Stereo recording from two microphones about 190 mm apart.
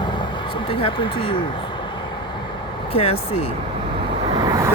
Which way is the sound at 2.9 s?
30° left (ahead or behind).